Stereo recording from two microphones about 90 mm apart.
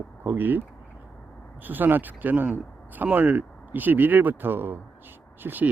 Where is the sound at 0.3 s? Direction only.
20° right (ahead or behind).